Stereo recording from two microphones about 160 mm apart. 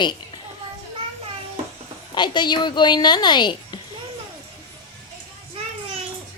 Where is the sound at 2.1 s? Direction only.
30° left (ahead or behind).